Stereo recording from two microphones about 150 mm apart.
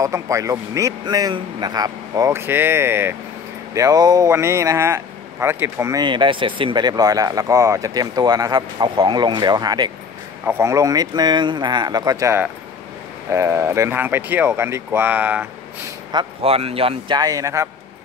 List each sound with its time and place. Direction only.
0.0 s speech: 20° right (ahead or behind)
6.0 s speech: 35° right (ahead or behind); by 15.4 s 10° right (ahead or behind)
16.1 s speech: 35° right (ahead or behind)
17.2 s speech: 25° right (ahead or behind)